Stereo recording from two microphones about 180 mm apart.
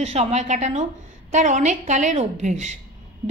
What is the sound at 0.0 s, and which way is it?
A woman's voice, 35° right (ahead or behind).